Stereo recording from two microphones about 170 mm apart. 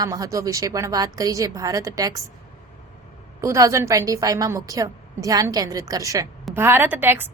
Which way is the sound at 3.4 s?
15° right (ahead or behind).